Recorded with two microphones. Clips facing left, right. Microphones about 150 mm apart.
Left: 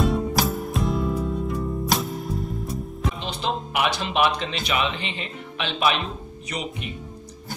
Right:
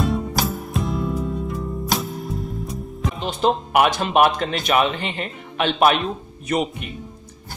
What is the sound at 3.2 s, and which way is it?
Speech, 45° right (ahead or behind).